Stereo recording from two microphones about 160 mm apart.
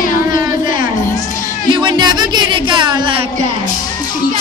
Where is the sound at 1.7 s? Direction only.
30° right (ahead or behind).